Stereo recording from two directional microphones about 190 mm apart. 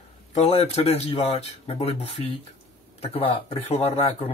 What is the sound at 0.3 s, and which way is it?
Speech, 35° left (ahead or behind).